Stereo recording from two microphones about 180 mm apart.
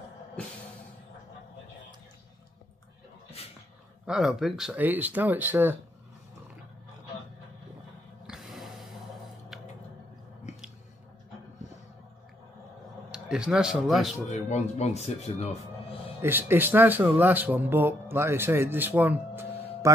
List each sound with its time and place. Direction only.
4.0 s speech: 5° right (ahead or behind)
8.3 s a sound: centre (ahead or behind)
13.1 s speech: 5° right (ahead or behind)
14.3 s speech: 40° left (ahead or behind)
16.2 s speech: 10° right (ahead or behind)